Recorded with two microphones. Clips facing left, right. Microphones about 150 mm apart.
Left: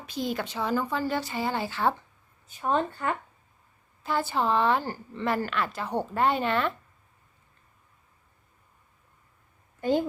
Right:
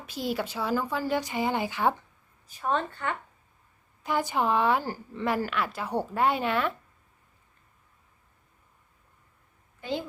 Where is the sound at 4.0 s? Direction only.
15° right (ahead or behind).